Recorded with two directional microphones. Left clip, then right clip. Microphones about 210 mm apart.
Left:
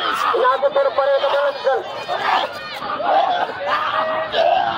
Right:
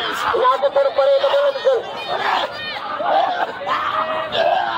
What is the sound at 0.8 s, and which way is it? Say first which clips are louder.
Speech: right 1 dB; 45° right (ahead or behind).